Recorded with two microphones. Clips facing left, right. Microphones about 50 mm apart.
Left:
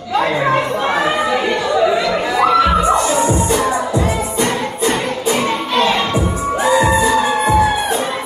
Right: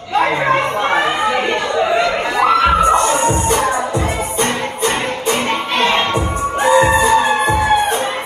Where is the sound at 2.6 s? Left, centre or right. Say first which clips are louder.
Right 1 dB; right.